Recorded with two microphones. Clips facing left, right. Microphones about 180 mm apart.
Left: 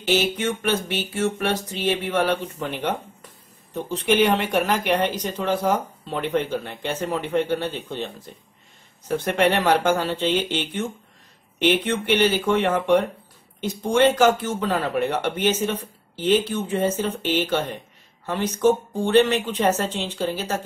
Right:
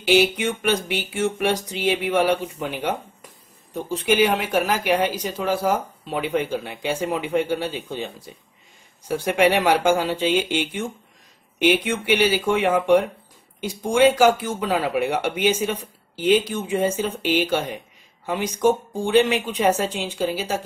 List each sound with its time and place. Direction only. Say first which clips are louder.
0.0 s speech: right 3 dB; 10° right (ahead or behind)